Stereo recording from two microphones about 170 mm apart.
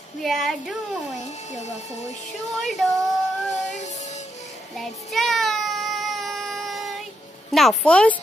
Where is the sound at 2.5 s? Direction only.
Centre (ahead or behind).